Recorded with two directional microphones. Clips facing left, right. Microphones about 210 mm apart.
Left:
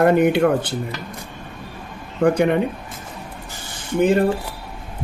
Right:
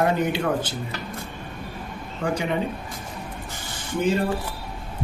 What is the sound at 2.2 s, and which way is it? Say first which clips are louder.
Speech: left 9 dB; 60° left (ahead or behind).